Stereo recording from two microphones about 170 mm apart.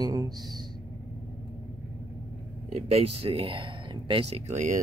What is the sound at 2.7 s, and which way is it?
Speech, 35° right (ahead or behind).